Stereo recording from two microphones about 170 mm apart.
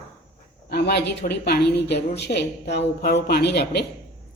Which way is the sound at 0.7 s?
75° left (ahead or behind).